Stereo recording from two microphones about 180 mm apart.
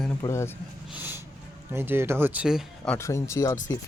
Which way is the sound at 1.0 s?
10° right (ahead or behind).